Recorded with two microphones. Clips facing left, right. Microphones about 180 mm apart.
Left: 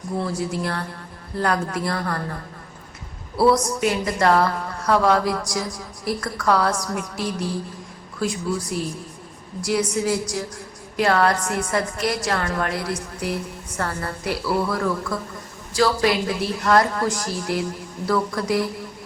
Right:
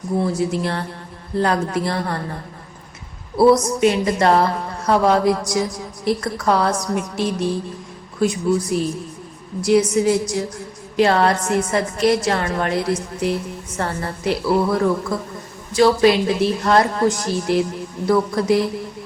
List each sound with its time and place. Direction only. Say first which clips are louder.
0.2 s a woman's voice: right 5 dB; 20° right (ahead or behind)